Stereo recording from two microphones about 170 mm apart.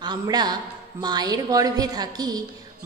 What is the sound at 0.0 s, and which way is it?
A man's voice, 25° right (ahead or behind).